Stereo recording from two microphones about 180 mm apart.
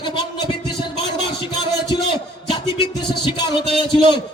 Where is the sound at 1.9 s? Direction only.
30° left (ahead or behind).